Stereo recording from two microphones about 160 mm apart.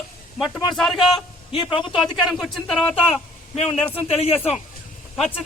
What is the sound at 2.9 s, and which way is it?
Speech, 40° left (ahead or behind).